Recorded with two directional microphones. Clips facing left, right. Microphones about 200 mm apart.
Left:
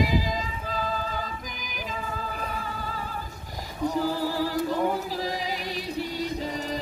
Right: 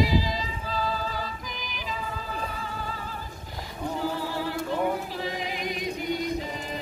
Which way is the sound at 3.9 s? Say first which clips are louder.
Left 2 dB; 40° left (ahead or behind).